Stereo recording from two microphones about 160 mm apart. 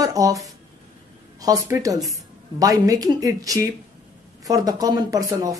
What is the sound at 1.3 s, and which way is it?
Speech, 20° right (ahead or behind).